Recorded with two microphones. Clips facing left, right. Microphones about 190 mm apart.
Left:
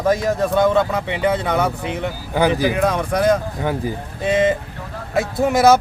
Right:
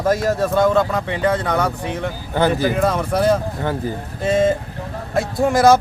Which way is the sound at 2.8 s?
5° right (ahead or behind).